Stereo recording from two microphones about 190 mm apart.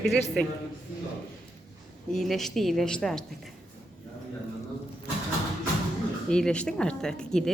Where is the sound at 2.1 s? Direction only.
Centre (ahead or behind).